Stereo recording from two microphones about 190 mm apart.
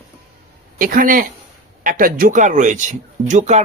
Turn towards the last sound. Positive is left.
turn(degrees=-40)  # may be behind; listen again after turning